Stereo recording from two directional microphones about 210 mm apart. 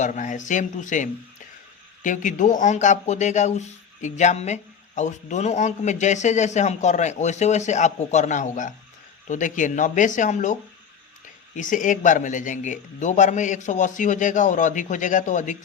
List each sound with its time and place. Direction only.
0.0 s speech: 35° left (ahead or behind)